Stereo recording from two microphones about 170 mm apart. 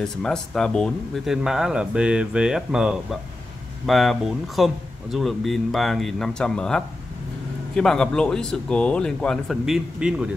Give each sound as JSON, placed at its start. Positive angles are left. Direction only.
{"t": 0.0, "sound": "speech", "side_deg": 5}